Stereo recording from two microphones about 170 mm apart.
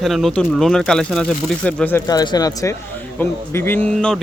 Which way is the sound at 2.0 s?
25° left (ahead or behind).